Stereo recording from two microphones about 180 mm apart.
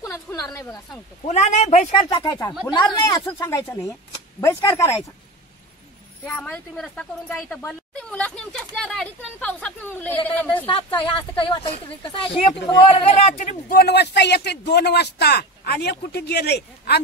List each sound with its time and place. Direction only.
0.0 s a sound: 20° left (ahead or behind)
1.2 s speech: 40° left (ahead or behind)
2.0 s speech: 20° left (ahead or behind)
6.2 s a woman's voice: 10° left (ahead or behind)
10.7 s speech: 25° left (ahead or behind)
13.7 s a man's voice: 60° left (ahead or behind)